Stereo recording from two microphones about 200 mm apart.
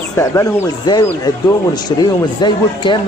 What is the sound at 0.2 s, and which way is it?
Speech, 15° left (ahead or behind).